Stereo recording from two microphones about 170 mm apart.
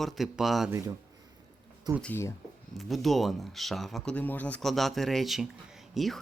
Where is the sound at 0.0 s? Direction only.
Centre (ahead or behind).